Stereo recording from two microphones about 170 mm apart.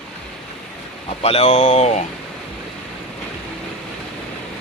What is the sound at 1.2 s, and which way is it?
Speech, 35° left (ahead or behind).